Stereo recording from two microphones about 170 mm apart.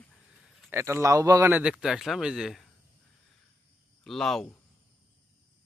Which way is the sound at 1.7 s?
Centre (ahead or behind).